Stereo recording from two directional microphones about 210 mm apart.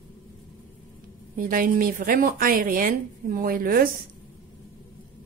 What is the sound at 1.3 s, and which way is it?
Speech, 40° right (ahead or behind).